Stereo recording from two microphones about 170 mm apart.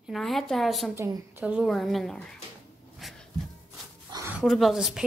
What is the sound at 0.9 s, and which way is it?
Speech, 15° right (ahead or behind).